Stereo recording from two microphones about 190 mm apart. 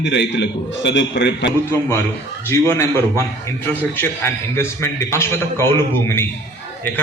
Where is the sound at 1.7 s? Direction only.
10° left (ahead or behind).